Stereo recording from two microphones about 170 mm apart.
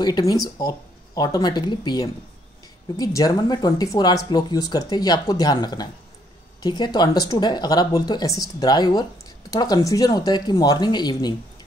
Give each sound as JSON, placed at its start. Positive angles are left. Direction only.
{"t": 0.0, "sound": "speech", "side_deg": 25}